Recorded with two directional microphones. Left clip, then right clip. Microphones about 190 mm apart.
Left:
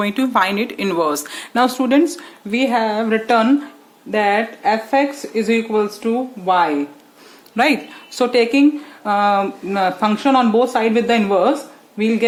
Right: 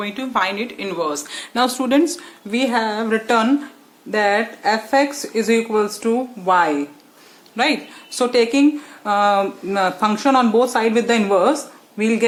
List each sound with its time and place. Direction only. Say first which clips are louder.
0.0 s speech: left 4 dB; 40° left (ahead or behind)
1.5 s speech: left 2 dB; 15° left (ahead or behind)
7.5 s speech: left 3 dB; 30° left (ahead or behind)
8.1 s speech: left 1 dB; 15° left (ahead or behind)